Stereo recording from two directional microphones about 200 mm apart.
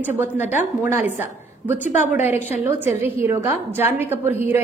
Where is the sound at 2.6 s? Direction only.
10° right (ahead or behind).